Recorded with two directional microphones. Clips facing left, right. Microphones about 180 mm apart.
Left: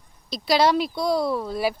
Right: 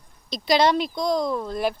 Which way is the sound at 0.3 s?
5° left (ahead or behind).